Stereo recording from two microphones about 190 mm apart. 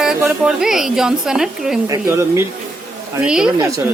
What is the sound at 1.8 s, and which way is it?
A woman's voice, 15° right (ahead or behind).